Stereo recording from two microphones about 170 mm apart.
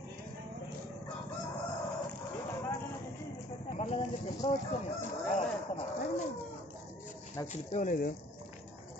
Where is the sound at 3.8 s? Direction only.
45° left (ahead or behind).